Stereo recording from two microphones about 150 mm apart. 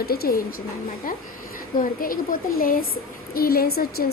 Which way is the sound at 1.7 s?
70° left (ahead or behind).